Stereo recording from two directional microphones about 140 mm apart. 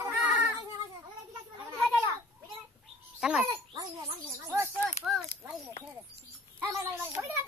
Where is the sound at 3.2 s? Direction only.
5° right (ahead or behind).